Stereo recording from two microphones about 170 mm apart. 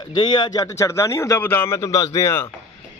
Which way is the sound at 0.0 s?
25° left (ahead or behind).